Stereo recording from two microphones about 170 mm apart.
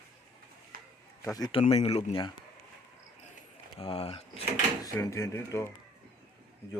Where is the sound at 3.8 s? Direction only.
35° left (ahead or behind).